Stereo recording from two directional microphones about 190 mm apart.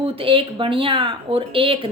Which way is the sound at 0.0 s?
30° right (ahead or behind).